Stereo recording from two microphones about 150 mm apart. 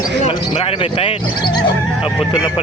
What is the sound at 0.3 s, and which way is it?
Speech, 40° left (ahead or behind).